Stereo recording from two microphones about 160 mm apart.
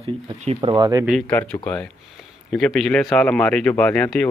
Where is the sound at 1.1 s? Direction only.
5° left (ahead or behind).